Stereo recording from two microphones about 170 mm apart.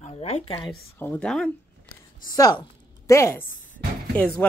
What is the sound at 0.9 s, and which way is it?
Speech, 10° left (ahead or behind).